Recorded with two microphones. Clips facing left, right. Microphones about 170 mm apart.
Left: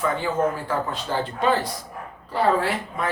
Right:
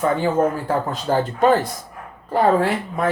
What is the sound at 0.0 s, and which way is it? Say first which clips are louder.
Speech: right 5 dB; 45° right (ahead or behind).